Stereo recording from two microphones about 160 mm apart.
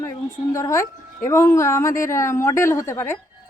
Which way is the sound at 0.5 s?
20° left (ahead or behind).